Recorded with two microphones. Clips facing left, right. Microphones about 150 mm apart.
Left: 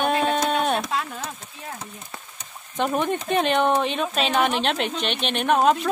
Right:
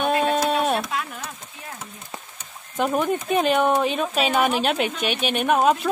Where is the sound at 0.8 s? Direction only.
20° left (ahead or behind).